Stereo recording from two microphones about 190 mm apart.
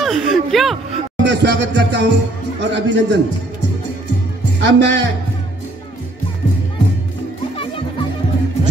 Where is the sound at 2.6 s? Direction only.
65° right (ahead or behind).